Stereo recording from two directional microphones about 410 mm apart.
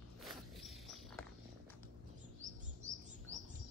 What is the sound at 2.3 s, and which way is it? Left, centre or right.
Chirp, centre.